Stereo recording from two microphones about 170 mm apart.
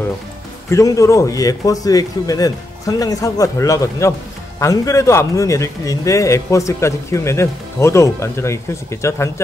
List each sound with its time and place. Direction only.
0.7 s a man's voice: 20° left (ahead or behind)